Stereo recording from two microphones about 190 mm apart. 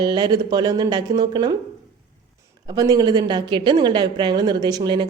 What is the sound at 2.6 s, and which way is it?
A woman's voice, 20° right (ahead or behind).